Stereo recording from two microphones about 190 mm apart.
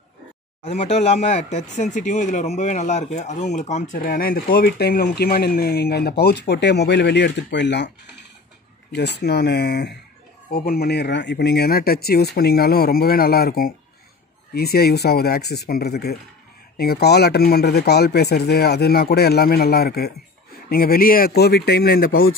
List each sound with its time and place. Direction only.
0.7 s speech: 35° left (ahead or behind); by 7.9 s 65° left (ahead or behind)
8.9 s speech: 60° left (ahead or behind)